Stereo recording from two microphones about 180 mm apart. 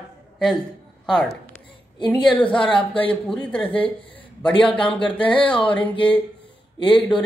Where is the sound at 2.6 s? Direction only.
30° left (ahead or behind).